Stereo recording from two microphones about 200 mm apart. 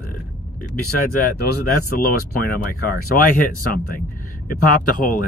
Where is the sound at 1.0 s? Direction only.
50° left (ahead or behind).